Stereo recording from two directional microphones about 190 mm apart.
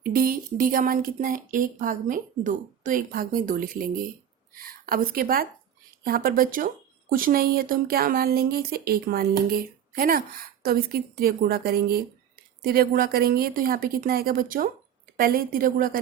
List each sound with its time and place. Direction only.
0.0 s speech: 50° right (ahead or behind)